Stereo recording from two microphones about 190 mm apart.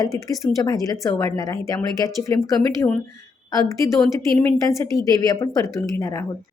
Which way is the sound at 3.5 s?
15° left (ahead or behind).